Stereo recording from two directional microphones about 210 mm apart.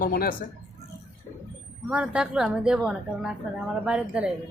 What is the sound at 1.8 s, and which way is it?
Speech, 5° right (ahead or behind).